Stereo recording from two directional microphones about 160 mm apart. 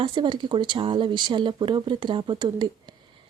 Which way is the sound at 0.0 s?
30° right (ahead or behind).